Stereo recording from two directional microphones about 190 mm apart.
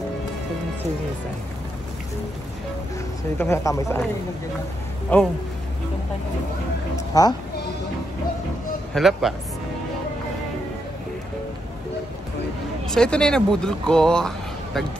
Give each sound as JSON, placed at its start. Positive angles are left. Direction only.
{"t": 3.3, "sound": "speech", "side_deg": 15}
{"t": 5.1, "sound": "speech", "side_deg": 10}
{"t": 7.1, "sound": "speech", "side_deg": 20}
{"t": 8.9, "sound": "speech", "side_deg": 0}
{"t": 12.8, "sound": "speech", "side_deg": 5}